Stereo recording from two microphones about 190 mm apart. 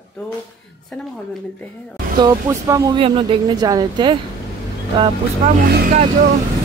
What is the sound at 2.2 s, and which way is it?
Speech, 15° right (ahead or behind).